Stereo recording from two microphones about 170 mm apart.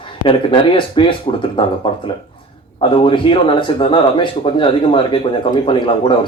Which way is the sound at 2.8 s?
30° left (ahead or behind).